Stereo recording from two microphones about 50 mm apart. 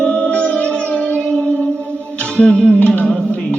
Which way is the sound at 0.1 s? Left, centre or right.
Left.